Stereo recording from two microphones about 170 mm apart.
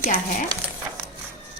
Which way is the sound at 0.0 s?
55° left (ahead or behind).